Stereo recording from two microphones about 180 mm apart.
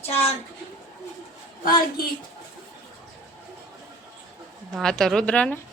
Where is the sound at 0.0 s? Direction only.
35° left (ahead or behind).